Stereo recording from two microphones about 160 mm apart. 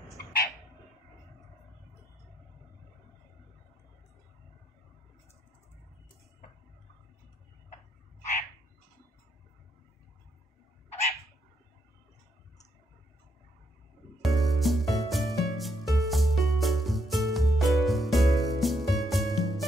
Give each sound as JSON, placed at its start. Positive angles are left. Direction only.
{"t": 10.9, "sound": "dog", "side_deg": 40}
{"t": 14.2, "sound": "music", "side_deg": 0}